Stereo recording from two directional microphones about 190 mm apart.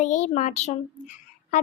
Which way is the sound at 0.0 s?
40° left (ahead or behind).